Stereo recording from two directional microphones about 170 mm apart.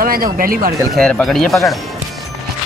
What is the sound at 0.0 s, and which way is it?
Speech, 60° right (ahead or behind).